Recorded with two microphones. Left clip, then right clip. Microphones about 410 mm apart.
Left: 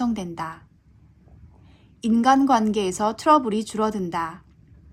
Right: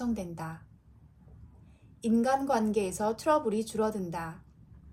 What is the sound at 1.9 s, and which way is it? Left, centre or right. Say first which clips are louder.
A woman's voice: left 9 dB; left.